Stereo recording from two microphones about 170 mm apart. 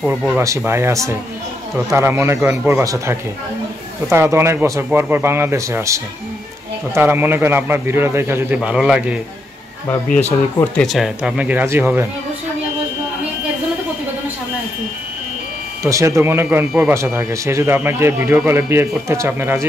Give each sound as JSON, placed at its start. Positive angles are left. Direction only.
{"t": 0.0, "sound": "a man's voice", "side_deg": -5}
{"t": 0.4, "sound": "speech", "side_deg": -15}
{"t": 8.5, "sound": "a man's voice", "side_deg": -5}
{"t": 10.6, "sound": "speech", "side_deg": 0}
{"t": 15.8, "sound": "speech", "side_deg": -20}